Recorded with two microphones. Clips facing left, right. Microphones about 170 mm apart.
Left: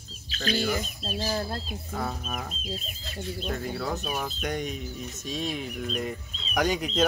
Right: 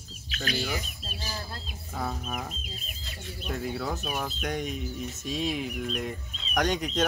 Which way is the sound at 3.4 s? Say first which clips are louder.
Right 1 dB; centre (ahead or behind).